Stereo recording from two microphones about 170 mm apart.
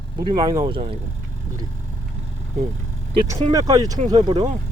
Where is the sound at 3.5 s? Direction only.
20° right (ahead or behind).